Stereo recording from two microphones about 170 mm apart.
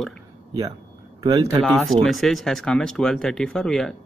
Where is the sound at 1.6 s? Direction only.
Centre (ahead or behind).